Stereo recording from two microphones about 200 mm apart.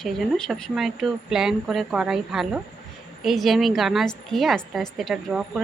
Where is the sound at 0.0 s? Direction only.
Centre (ahead or behind).